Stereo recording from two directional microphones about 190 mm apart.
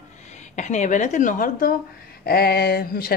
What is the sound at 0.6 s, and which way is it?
Speech, 40° left (ahead or behind).